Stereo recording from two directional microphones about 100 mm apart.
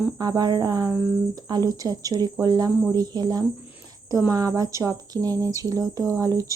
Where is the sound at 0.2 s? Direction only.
40° right (ahead or behind).